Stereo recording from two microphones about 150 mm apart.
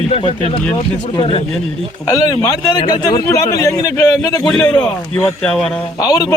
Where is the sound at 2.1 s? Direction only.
25° left (ahead or behind).